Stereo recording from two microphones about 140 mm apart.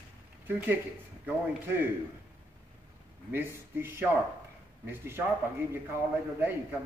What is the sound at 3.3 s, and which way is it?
Speech, 15° right (ahead or behind).